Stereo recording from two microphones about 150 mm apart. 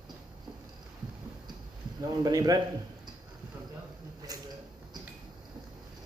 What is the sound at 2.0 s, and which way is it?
Speech, 25° right (ahead or behind).